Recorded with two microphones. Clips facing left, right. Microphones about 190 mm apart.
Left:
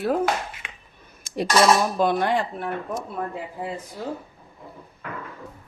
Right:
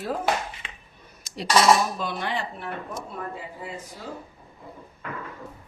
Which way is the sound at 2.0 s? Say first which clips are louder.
Left 8 dB; 50° left (ahead or behind).